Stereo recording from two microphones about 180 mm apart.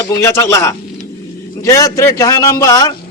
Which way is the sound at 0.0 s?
15° left (ahead or behind).